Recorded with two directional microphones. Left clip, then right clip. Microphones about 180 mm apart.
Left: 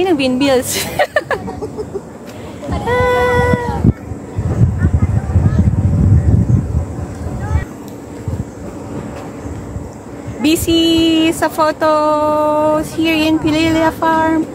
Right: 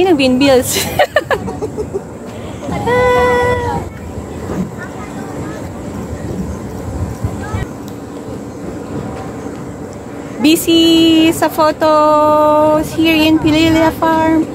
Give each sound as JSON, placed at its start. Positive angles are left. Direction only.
{"t": 0.0, "sound": "a woman's voice", "side_deg": 5}
{"t": 2.7, "sound": "a sound", "side_deg": 15}
{"t": 10.4, "sound": "speech", "side_deg": -5}